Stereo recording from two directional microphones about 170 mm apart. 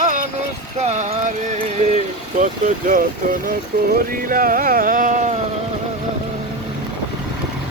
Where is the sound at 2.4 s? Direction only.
50° right (ahead or behind).